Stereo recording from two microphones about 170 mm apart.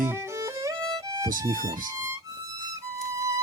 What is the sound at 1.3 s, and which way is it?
Speech, 55° right (ahead or behind).